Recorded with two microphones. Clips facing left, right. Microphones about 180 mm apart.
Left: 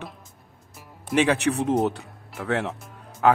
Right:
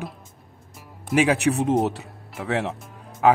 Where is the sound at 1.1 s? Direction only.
10° right (ahead or behind).